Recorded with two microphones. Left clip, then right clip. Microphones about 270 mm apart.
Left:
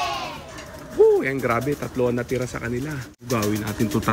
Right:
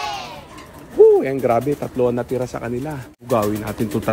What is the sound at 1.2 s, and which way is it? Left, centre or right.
Speech, right.